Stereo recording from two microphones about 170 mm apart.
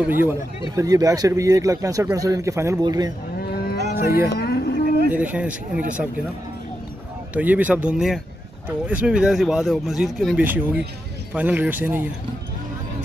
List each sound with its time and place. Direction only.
0.0 s a man's voice: 10° right (ahead or behind)
3.3 s moo: 65° left (ahead or behind)
4.4 s a sound: 65° left (ahead or behind)
5.1 s speech: 10° right (ahead or behind)
7.3 s speech: 10° right (ahead or behind)